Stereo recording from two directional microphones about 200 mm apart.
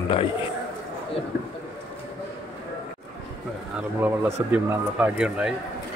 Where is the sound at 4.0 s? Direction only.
10° right (ahead or behind).